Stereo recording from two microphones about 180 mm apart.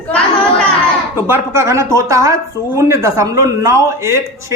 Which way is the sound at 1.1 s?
10° right (ahead or behind).